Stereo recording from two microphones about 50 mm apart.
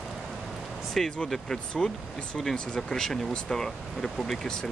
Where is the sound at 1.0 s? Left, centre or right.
Centre.